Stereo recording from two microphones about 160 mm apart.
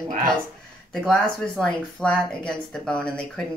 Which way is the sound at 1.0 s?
5° left (ahead or behind).